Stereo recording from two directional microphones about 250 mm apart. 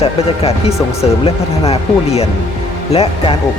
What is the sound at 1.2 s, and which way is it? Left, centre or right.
Speech, left.